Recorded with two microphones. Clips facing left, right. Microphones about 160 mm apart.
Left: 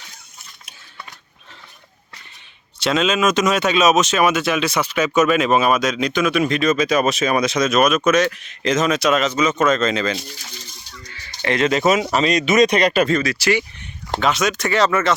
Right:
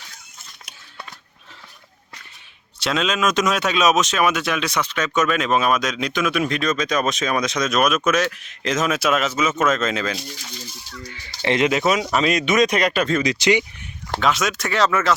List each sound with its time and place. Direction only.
2.7 s speech: centre (ahead or behind)
11.4 s speech: 20° right (ahead or behind)
11.7 s speech: centre (ahead or behind)
13.2 s speech: 20° right (ahead or behind)
14.2 s speech: centre (ahead or behind)